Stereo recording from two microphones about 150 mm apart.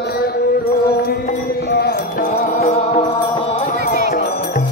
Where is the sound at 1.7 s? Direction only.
80° left.